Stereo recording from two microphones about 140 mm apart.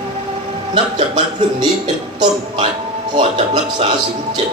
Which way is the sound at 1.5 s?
35° right (ahead or behind).